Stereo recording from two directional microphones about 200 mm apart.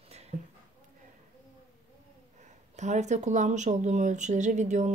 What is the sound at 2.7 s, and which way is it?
Speech, 35° right (ahead or behind).